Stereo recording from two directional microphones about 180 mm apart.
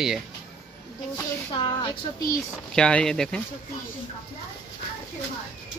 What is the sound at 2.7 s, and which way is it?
Speech, 5° left (ahead or behind).